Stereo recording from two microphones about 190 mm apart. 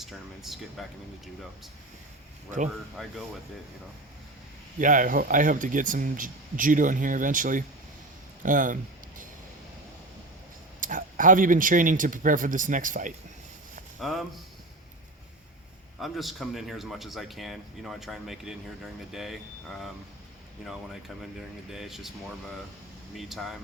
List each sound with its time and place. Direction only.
0.0 s speech: centre (ahead or behind)
3.0 s speech: centre (ahead or behind)
4.8 s speech: 45° right (ahead or behind)
10.8 s speech: 45° right (ahead or behind)
14.0 s speech: centre (ahead or behind)
16.0 s speech: centre (ahead or behind)
23.1 s speech: centre (ahead or behind)